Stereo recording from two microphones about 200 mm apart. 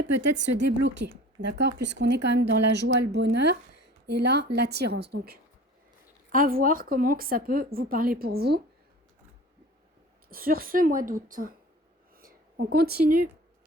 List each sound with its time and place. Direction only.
0.0 s a woman's voice: 65° right (ahead or behind)
10.2 s speech: 45° right (ahead or behind)
12.1 s a sound: 50° right (ahead or behind)